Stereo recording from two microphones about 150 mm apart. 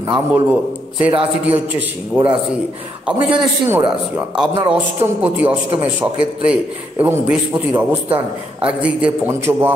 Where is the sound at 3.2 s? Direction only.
35° right (ahead or behind).